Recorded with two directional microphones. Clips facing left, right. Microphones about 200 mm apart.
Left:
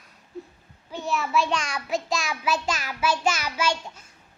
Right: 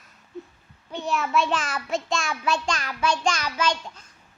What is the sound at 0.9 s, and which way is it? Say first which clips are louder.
A child's voice: right 1 dB; centre (ahead or behind).